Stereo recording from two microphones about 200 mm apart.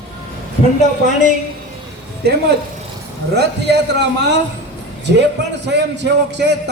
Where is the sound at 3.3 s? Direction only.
55° right (ahead or behind).